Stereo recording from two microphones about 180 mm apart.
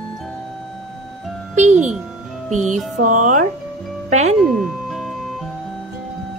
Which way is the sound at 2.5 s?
40° right (ahead or behind).